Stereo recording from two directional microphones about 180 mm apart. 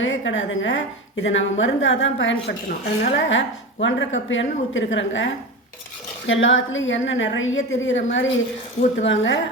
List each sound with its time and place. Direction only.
0.0 s a woman's voice: 90° left
2.6 s a woman's voice: 60° left (ahead or behind); by 9.4 s 90° left